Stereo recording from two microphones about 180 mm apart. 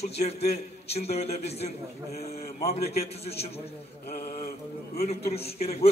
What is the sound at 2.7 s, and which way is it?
Speech, 35° left (ahead or behind).